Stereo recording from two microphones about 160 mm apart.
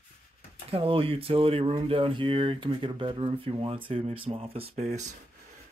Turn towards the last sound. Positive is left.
turn(degrees=-45)  # may be behind; listen again after turning